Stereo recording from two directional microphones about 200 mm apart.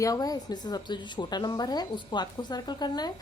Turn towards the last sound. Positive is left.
turn(degrees=20)  # may be behind; listen again after turning